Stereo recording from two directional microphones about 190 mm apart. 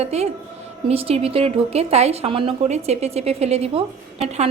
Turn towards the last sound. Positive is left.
turn(degrees=-35)  # may be behind; listen again after turning